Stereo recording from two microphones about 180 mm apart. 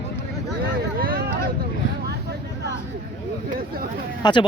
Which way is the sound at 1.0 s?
55° right (ahead or behind).